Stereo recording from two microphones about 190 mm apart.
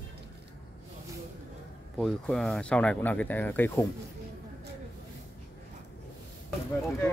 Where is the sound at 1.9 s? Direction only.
Centre (ahead or behind).